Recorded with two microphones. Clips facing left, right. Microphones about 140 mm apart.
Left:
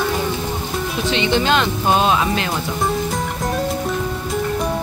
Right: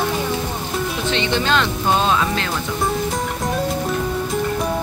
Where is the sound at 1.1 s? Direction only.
15° left (ahead or behind).